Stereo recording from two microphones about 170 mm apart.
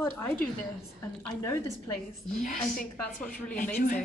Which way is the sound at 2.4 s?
55° left (ahead or behind).